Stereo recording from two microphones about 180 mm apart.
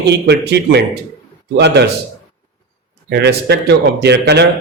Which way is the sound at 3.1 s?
65° right (ahead or behind).